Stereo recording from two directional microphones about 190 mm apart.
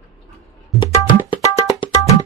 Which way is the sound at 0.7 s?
25° left (ahead or behind).